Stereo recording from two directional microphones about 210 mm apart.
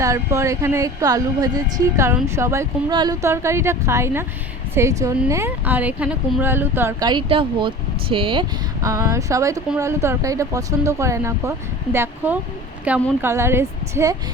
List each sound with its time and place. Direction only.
0.0 s a woman's voice: 15° right (ahead or behind)